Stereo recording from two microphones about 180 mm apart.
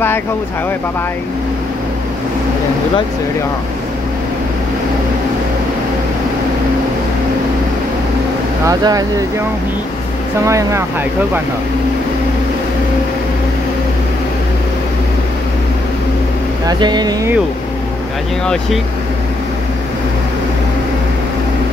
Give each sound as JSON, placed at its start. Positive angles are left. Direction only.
{"t": 8.6, "sound": "speech", "side_deg": -20}
{"t": 10.4, "sound": "speech", "side_deg": -15}
{"t": 16.6, "sound": "speech", "side_deg": -25}